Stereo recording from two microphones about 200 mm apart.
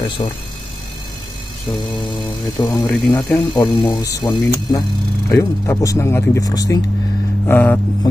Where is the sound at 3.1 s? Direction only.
20° left (ahead or behind).